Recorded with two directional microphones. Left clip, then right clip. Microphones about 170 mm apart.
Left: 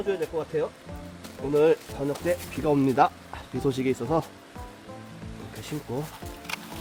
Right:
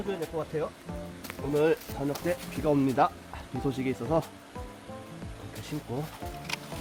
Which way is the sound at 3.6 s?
65° left (ahead or behind).